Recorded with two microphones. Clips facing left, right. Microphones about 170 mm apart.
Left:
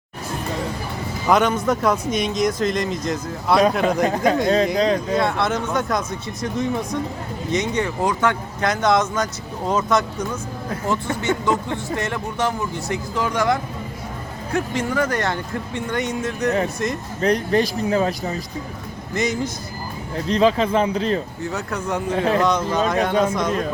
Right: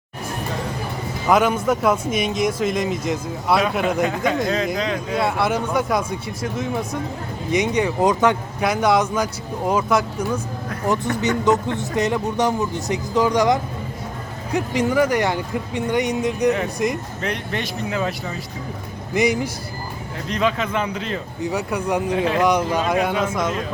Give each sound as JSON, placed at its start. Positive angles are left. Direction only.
{"t": 1.3, "sound": "speech", "side_deg": -5}
{"t": 4.0, "sound": "speech", "side_deg": 40}
{"t": 5.1, "sound": "speech", "side_deg": -10}
{"t": 17.2, "sound": "speech", "side_deg": 35}
{"t": 19.1, "sound": "speech", "side_deg": -10}
{"t": 20.2, "sound": "speech", "side_deg": 35}
{"t": 21.4, "sound": "speech", "side_deg": -15}